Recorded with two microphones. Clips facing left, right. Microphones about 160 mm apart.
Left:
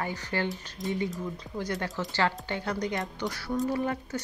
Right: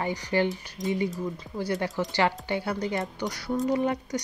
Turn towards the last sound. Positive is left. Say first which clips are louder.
# right 4 dB
turn(degrees=-15)  # may be behind; listen again after turning